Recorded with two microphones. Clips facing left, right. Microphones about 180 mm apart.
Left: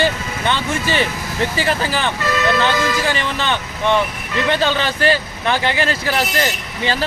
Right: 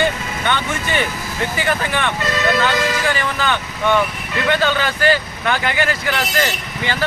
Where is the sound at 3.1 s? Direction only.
25° left (ahead or behind).